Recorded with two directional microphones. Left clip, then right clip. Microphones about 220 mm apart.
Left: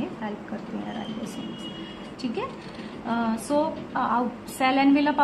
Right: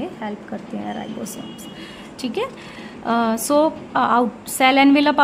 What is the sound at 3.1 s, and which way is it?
A woman's voice, 50° right (ahead or behind).